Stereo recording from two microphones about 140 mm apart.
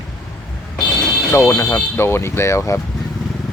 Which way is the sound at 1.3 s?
20° left (ahead or behind).